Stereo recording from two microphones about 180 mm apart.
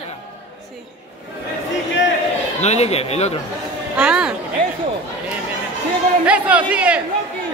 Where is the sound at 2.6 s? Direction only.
35° left (ahead or behind).